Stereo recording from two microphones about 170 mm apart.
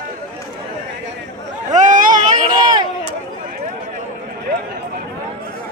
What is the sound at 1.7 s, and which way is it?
Vehicle, 50° right (ahead or behind).